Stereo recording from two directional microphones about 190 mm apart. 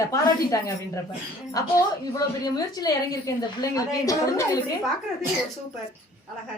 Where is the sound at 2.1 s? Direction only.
20° left (ahead or behind).